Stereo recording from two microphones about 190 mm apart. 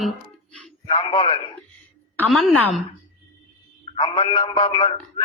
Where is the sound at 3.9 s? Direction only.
25° left (ahead or behind).